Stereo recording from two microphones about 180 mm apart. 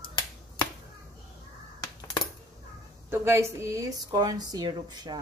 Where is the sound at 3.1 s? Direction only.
15° right (ahead or behind).